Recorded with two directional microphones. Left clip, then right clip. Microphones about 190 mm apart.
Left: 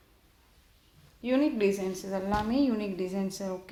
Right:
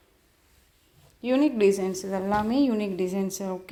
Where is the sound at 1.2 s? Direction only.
40° right (ahead or behind).